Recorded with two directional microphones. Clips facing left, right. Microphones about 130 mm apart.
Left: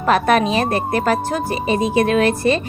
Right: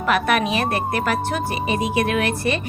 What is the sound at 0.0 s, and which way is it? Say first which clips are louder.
A woman's voice: left 4 dB; 35° left (ahead or behind).